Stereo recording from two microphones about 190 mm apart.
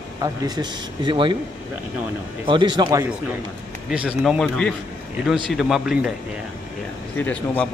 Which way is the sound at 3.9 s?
5° right (ahead or behind).